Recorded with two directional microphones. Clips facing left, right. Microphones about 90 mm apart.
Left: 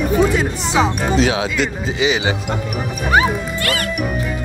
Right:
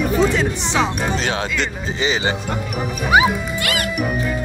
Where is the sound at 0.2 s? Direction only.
5° left (ahead or behind).